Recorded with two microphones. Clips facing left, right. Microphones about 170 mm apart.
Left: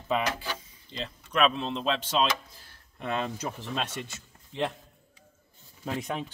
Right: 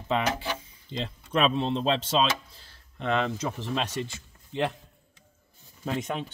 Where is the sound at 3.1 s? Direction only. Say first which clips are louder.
Right 4 dB; 80° right.